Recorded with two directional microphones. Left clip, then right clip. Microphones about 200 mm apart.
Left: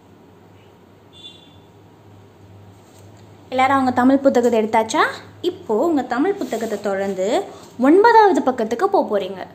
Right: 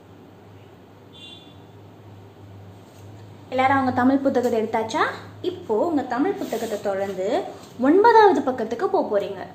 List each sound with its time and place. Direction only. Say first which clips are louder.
3.4 s a woman's voice: left 3 dB; 35° left (ahead or behind)